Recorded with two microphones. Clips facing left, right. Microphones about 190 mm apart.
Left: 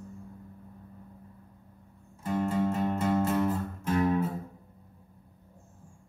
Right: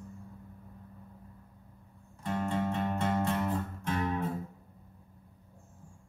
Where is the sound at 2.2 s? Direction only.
5° left (ahead or behind).